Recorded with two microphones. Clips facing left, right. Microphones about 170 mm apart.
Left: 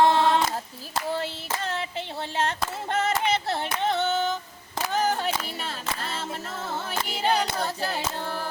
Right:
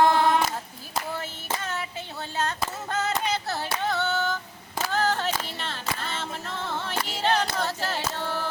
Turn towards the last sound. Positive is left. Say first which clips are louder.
# even
turn(degrees=15)  # may be behind; listen again after turning